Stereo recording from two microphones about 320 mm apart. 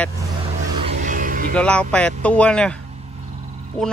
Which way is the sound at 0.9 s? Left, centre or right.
Right.